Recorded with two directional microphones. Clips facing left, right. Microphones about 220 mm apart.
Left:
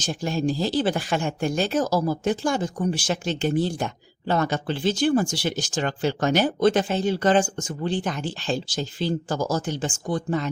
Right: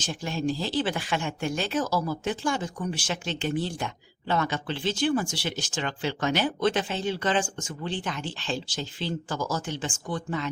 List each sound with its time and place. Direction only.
0.0 s speech: 40° left (ahead or behind)